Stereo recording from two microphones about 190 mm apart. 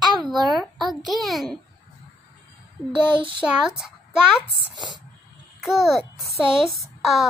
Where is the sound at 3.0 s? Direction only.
5° right (ahead or behind).